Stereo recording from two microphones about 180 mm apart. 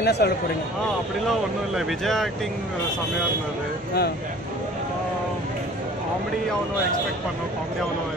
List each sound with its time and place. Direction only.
0.0 s speech: 65° left (ahead or behind)
1.8 s speech: centre (ahead or behind)